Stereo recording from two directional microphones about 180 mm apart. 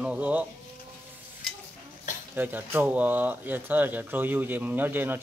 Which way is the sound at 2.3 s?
10° right (ahead or behind).